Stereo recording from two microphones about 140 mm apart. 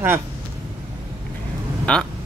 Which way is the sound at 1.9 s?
5° left (ahead or behind).